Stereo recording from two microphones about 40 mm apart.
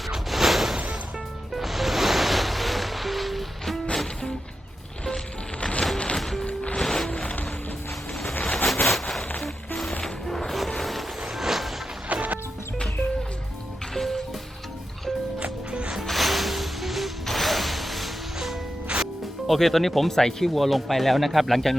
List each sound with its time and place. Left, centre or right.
0.3 s a sound: centre
1.5 s music: centre
5.5 s music: left
6.1 s music: centre
7.1 s music: left
8.4 s a sound: centre
9.4 s music: centre
10.8 s vehicle: centre
11.3 s a sound: centre
12.0 s music: right
13.9 s music: centre
16.0 s music: centre
18.9 s music: right
19.5 s speech: centre